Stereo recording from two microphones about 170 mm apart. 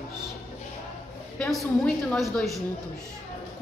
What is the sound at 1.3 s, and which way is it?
A woman's voice, centre (ahead or behind).